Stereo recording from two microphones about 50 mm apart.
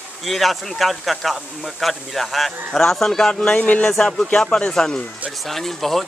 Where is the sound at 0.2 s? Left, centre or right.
Centre.